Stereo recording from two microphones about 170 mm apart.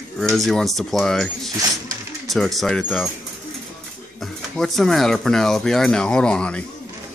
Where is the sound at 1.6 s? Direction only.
20° right (ahead or behind).